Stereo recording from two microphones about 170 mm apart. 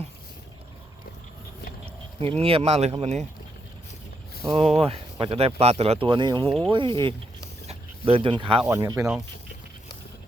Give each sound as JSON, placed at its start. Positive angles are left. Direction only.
{"t": 2.4, "sound": "speech", "side_deg": -35}
{"t": 4.4, "sound": "speech", "side_deg": -35}
{"t": 8.6, "sound": "speech", "side_deg": -15}
{"t": 9.0, "sound": "speech", "side_deg": -5}